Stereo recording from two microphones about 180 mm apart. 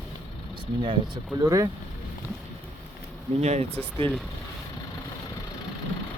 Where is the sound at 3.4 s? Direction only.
40° right (ahead or behind).